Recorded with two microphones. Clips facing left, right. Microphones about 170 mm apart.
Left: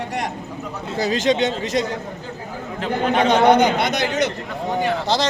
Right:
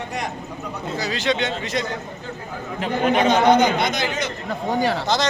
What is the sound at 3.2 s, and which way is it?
A man's voice, 60° left (ahead or behind).